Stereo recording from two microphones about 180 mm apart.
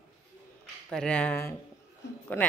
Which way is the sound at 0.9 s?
5° left (ahead or behind).